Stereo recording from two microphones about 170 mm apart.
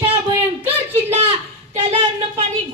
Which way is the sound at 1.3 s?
35° right (ahead or behind).